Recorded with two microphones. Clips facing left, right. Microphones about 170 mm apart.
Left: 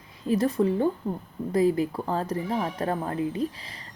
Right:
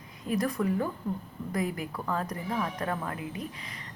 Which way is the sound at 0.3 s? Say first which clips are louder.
Left 5 dB; 25° left (ahead or behind).